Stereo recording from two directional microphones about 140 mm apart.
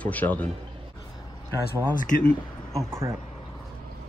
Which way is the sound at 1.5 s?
30° right (ahead or behind).